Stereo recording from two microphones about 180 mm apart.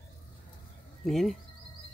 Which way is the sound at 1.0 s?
Centre (ahead or behind).